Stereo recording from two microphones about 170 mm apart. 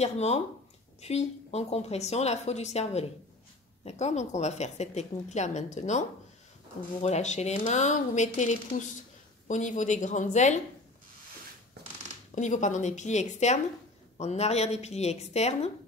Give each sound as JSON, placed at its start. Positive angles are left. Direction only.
{"t": 0.0, "sound": "a woman's voice", "side_deg": 40}
{"t": 12.4, "sound": "a woman's voice", "side_deg": 45}